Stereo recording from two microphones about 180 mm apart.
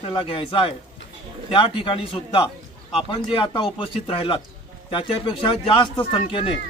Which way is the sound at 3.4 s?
25° left (ahead or behind).